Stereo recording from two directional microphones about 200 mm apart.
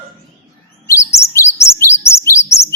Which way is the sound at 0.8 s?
15° left (ahead or behind).